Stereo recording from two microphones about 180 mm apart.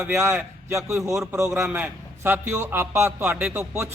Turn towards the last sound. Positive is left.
turn(degrees=-10)  # may be behind; listen again after turning